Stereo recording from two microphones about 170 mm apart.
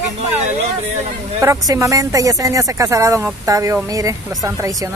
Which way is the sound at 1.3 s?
20° right (ahead or behind).